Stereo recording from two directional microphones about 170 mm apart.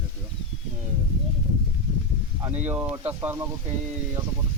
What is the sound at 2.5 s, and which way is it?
Speech, 10° right (ahead or behind).